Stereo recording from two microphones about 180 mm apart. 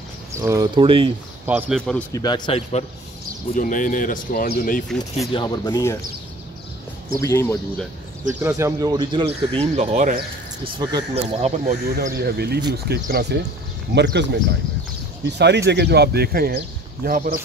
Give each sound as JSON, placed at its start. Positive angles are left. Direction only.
{"t": 0.3, "sound": "speech", "side_deg": -15}
{"t": 1.4, "sound": "a man's voice", "side_deg": -5}
{"t": 2.1, "sound": "speech", "side_deg": 25}
{"t": 3.5, "sound": "speech", "side_deg": 45}
{"t": 5.3, "sound": "speech", "side_deg": 25}
{"t": 7.2, "sound": "speech", "side_deg": 15}
{"t": 8.3, "sound": "speech", "side_deg": -15}
{"t": 10.6, "sound": "speech", "side_deg": -25}
{"t": 11.1, "sound": "speech", "side_deg": -40}
{"t": 12.2, "sound": "speech", "side_deg": -65}